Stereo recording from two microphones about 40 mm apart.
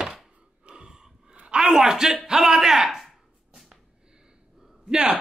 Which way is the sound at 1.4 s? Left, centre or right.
Right.